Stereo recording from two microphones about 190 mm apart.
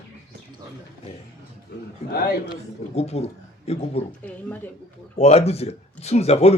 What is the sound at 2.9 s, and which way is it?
Speech, 35° left (ahead or behind).